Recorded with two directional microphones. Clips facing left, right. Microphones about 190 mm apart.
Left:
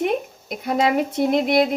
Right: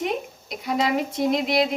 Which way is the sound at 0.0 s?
50° left (ahead or behind).